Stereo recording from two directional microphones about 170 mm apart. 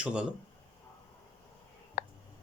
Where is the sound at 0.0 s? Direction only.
5° right (ahead or behind).